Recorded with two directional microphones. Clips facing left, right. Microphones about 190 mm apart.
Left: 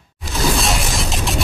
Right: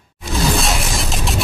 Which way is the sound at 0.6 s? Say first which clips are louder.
Even; centre (ahead or behind).